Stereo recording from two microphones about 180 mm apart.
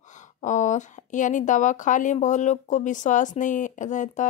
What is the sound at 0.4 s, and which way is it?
A woman's voice, 40° left (ahead or behind).